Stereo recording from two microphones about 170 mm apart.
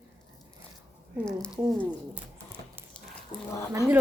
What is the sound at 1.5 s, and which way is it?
Speech, 10° right (ahead or behind).